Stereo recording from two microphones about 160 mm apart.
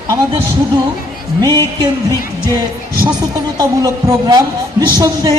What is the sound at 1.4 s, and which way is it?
Speech, 25° right (ahead or behind).